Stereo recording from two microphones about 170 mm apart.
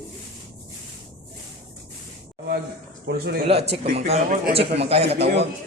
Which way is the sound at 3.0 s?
70° right (ahead or behind).